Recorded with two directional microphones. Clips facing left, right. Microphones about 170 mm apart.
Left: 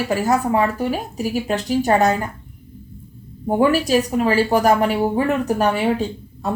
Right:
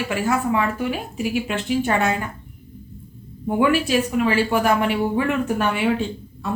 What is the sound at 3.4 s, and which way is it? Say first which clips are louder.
Speech: left 2 dB; 40° left (ahead or behind).